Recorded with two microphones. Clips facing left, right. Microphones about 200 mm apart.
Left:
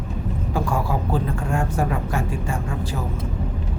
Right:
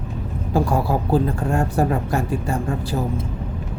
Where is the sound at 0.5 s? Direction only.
40° right (ahead or behind).